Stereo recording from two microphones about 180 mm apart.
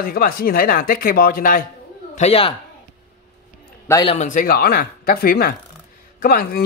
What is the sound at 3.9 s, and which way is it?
Speech, 25° left (ahead or behind).